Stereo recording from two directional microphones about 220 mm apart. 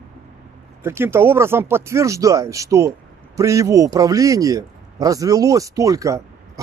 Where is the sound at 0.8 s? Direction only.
10° right (ahead or behind).